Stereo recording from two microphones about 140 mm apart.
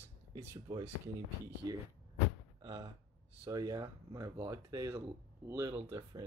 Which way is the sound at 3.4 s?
25° right (ahead or behind).